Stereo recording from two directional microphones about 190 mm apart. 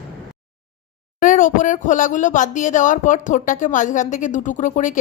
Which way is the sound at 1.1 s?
45° left (ahead or behind).